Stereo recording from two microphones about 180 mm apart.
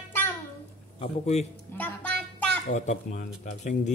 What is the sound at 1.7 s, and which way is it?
Speech, 10° left (ahead or behind).